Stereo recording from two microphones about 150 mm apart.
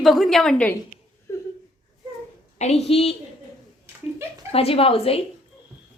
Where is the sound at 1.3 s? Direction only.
15° left (ahead or behind).